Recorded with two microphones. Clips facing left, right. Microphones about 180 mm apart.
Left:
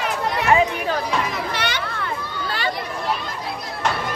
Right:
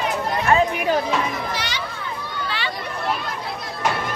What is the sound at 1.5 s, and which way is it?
Children playing, 60° left (ahead or behind).